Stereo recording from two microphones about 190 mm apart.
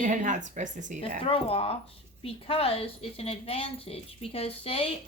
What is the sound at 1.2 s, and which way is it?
Speech, 30° left (ahead or behind).